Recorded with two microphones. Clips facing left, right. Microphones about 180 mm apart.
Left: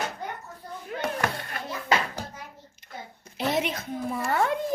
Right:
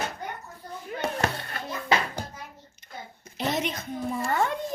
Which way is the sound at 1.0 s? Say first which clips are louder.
Right 1 dB; 30° right (ahead or behind).